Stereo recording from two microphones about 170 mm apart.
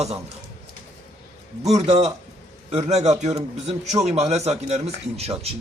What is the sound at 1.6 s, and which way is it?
A man's voice, 40° right (ahead or behind).